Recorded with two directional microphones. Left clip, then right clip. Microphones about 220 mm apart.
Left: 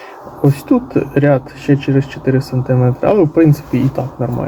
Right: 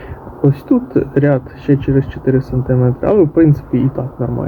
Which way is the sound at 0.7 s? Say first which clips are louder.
Even; 10° left (ahead or behind).